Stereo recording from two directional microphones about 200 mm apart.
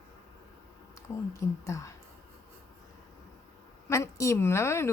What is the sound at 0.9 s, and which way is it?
Speech, 15° left (ahead or behind).